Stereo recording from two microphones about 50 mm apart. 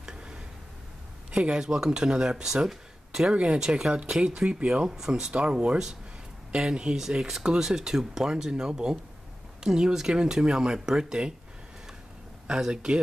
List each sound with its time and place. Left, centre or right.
0.0 s tick-tock: centre
1.4 s speech: centre
4.6 s speech: centre
12.4 s speech: centre